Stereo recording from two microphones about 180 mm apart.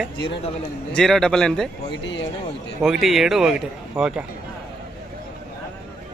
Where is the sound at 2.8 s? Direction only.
Centre (ahead or behind).